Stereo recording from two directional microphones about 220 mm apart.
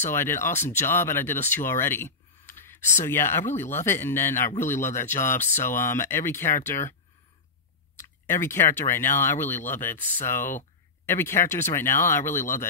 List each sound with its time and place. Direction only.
0.0 s speech: 10° left (ahead or behind)